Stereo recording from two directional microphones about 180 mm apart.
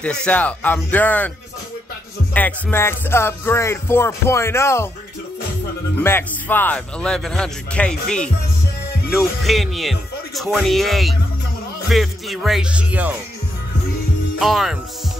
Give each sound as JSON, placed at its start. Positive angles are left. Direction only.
{"t": 0.0, "sound": "music", "side_deg": 5}
{"t": 2.3, "sound": "music", "side_deg": 10}
{"t": 5.9, "sound": "speech", "side_deg": 10}
{"t": 14.4, "sound": "speech", "side_deg": 0}